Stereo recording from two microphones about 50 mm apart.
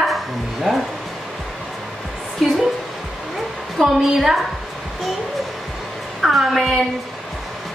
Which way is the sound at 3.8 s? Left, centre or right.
Centre.